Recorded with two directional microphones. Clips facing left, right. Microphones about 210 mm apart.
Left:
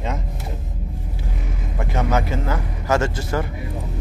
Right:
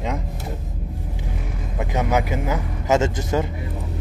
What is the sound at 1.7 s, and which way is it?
A man's voice, 15° right (ahead or behind).